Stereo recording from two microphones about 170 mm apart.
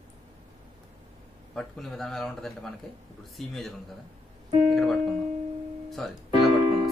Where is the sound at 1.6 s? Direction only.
Centre (ahead or behind).